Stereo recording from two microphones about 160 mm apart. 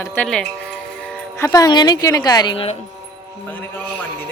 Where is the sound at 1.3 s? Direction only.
20° left (ahead or behind); by 2.8 s 40° left (ahead or behind).